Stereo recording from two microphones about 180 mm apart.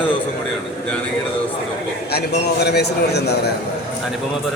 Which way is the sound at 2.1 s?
65° left (ahead or behind).